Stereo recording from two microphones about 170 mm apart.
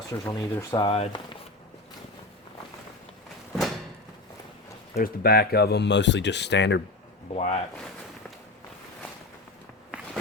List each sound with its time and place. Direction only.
0.1 s speech: 15° left (ahead or behind)
0.7 s speech: 25° left (ahead or behind)
4.9 s speech: 65° left (ahead or behind); by 6.8 s 90° left
7.3 s speech: 40° left (ahead or behind)